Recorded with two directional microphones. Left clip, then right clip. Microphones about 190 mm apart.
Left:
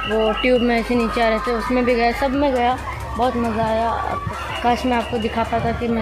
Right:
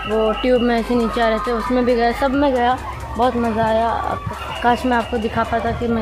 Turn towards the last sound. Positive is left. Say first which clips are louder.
# right 2 dB
turn(degrees=-10)  # may be behind; listen again after turning